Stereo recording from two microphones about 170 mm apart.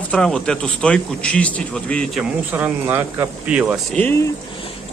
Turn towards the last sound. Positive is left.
turn(degrees=10)  # may be behind; listen again after turning